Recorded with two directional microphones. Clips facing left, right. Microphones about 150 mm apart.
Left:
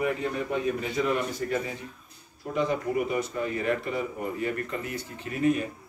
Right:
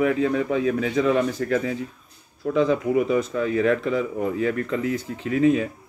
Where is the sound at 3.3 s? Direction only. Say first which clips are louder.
Right 7 dB; 90° right.